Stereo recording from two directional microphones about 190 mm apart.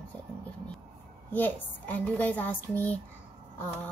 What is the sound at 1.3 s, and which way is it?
Speech, 10° left (ahead or behind).